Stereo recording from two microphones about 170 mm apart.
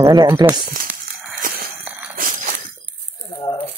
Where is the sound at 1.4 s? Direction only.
50° right (ahead or behind).